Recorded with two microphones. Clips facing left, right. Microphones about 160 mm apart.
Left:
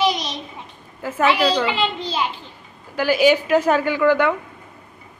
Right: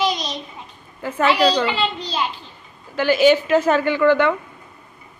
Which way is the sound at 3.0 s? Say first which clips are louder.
Right 1 dB; 10° left (ahead or behind).